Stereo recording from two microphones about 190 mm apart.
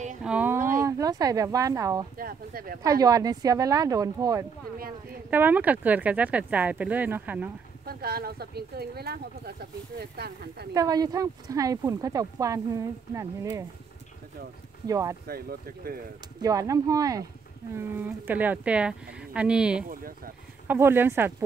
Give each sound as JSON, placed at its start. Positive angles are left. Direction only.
{"t": 0.2, "sound": "a sound", "side_deg": -5}
{"t": 0.6, "sound": "a sound", "side_deg": -45}
{"t": 0.8, "sound": "speech", "side_deg": -15}
{"t": 2.1, "sound": "speech", "side_deg": -50}
{"t": 2.8, "sound": "speech", "side_deg": -20}
{"t": 7.8, "sound": "speech", "side_deg": -55}
{"t": 10.7, "sound": "speech", "side_deg": -20}
{"t": 14.9, "sound": "speech", "side_deg": -15}
{"t": 15.2, "sound": "speech", "side_deg": -50}
{"t": 16.3, "sound": "speech", "side_deg": -20}